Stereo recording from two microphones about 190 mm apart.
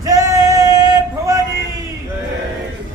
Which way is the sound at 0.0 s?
20° right (ahead or behind).